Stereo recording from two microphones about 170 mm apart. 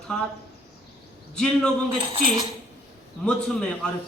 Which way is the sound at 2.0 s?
30° right (ahead or behind).